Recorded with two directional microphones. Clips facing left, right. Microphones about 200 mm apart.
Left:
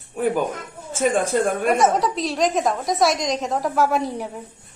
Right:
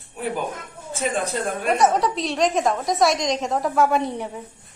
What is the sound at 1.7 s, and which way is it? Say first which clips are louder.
A woman's voice: right 3 dB; centre (ahead or behind).